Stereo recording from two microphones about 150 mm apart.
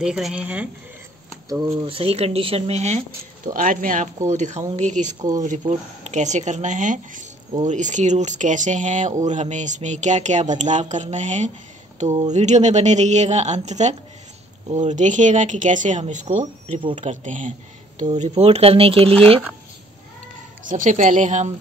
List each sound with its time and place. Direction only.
0.0 s speech: 5° right (ahead or behind)
1.5 s speech: 25° right (ahead or behind)
1.9 s speech: 40° right (ahead or behind)
3.5 s speech: 65° right (ahead or behind)
4.3 s speech: 50° right (ahead or behind)
20.6 s speech: 55° right (ahead or behind)